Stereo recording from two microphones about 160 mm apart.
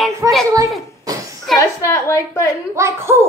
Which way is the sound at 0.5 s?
20° right (ahead or behind).